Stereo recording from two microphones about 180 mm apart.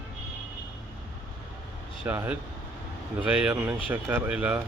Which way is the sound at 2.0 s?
10° right (ahead or behind).